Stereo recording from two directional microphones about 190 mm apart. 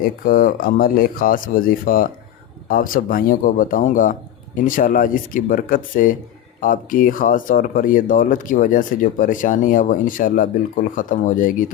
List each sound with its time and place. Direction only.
0.0 s speech: 50° left (ahead or behind)